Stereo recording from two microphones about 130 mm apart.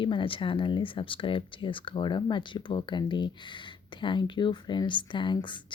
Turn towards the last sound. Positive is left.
turn(degrees=40)  # may be behind; listen again after turning